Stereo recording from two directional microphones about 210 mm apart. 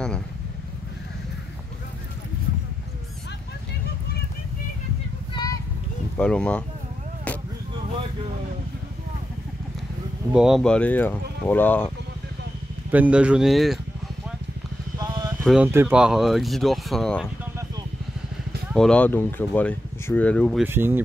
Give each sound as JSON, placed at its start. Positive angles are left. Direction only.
{"t": 5.3, "sound": "a sound", "side_deg": 20}
{"t": 6.1, "sound": "speech", "side_deg": 5}
{"t": 10.3, "sound": "speech", "side_deg": 0}
{"t": 12.9, "sound": "speech", "side_deg": -5}
{"t": 15.0, "sound": "vehicle", "side_deg": -20}
{"t": 15.4, "sound": "speech", "side_deg": -5}
{"t": 18.7, "sound": "speech", "side_deg": 5}
{"t": 20.6, "sound": "speech", "side_deg": -10}